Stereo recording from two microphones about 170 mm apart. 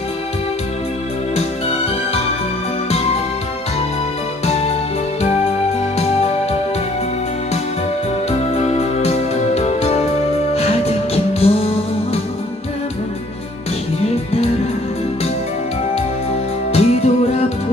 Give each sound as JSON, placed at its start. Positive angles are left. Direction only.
{"t": 4.5, "sound": "music", "side_deg": 35}
{"t": 5.9, "sound": "music", "side_deg": 35}
{"t": 8.3, "sound": "music", "side_deg": 40}
{"t": 16.7, "sound": "music", "side_deg": 40}